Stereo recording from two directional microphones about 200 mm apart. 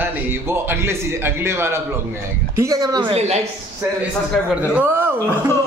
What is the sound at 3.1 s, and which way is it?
Speech, 30° right (ahead or behind).